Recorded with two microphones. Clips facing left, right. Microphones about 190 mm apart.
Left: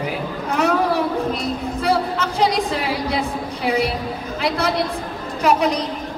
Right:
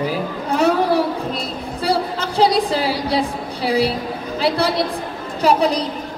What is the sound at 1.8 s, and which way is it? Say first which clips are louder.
A woman's voice: right 1 dB; 35° right (ahead or behind).